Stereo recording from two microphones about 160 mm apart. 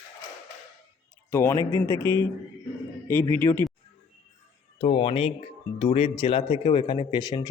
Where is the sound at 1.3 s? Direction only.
15° left (ahead or behind).